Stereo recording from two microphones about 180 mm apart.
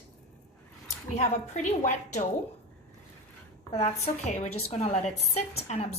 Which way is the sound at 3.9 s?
35° left (ahead or behind).